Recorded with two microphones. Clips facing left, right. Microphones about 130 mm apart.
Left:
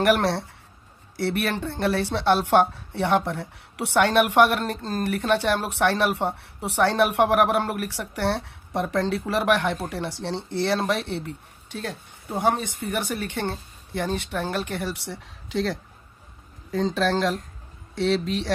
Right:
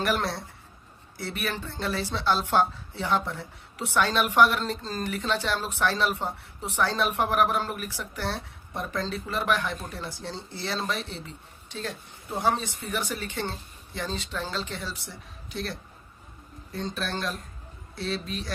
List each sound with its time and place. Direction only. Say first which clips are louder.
0.0 s speech: left 7 dB; 70° left (ahead or behind); by 18.5 s 90° left